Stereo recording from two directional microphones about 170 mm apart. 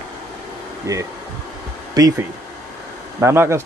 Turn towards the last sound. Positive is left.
turn(degrees=-15)  # may be behind; listen again after turning